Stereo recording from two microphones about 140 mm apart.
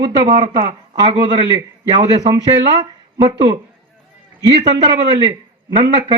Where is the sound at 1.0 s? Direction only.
35° right (ahead or behind).